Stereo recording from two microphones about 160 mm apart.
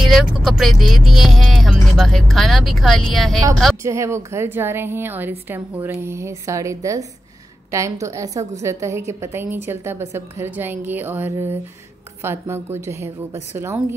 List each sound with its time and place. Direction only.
0.1 s speech: centre (ahead or behind)
3.8 s a woman's voice: 20° right (ahead or behind)